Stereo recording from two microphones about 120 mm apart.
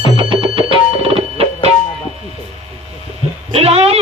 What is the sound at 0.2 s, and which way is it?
Music, 45° right (ahead or behind).